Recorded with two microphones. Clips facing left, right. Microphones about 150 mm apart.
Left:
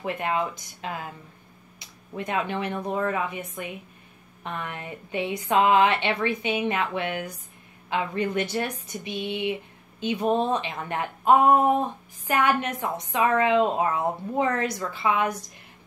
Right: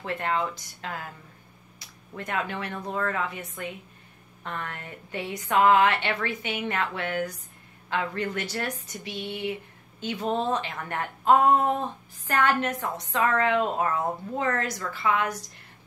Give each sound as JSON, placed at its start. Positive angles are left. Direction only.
{"t": 0.0, "sound": "speech", "side_deg": 15}
{"t": 2.1, "sound": "a woman's voice", "side_deg": 15}